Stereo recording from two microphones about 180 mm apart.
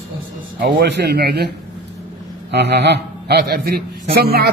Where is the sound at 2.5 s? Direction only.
65° right (ahead or behind).